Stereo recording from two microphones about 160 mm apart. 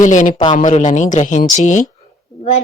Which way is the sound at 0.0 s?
50° left (ahead or behind).